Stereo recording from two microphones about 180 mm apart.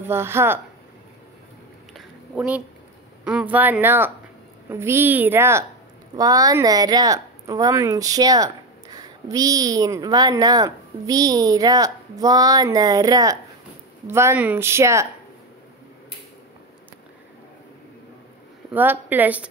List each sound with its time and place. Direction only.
0.0 s speech: 15° right (ahead or behind)
2.0 s a sound: 5° right (ahead or behind)
3.3 s speech: 5° right (ahead or behind)
18.7 s speech: 10° right (ahead or behind)